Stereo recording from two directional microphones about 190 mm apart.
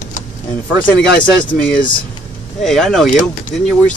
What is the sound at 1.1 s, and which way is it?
Speech, 45° left (ahead or behind).